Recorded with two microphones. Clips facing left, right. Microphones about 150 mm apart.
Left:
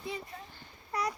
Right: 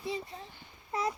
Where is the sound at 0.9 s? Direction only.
25° right (ahead or behind).